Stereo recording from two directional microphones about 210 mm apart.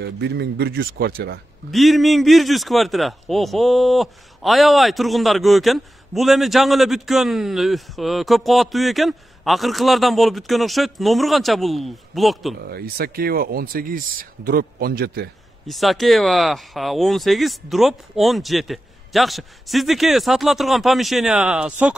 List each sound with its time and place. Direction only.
0.0 s speech: 55° right (ahead or behind)
1.7 s a man's voice: centre (ahead or behind)
12.6 s speech: 45° right (ahead or behind)
15.6 s a man's voice: centre (ahead or behind)